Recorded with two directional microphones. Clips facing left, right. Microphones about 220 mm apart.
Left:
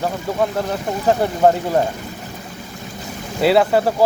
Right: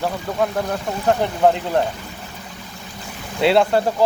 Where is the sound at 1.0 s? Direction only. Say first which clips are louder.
Left 2 dB; 5° left (ahead or behind).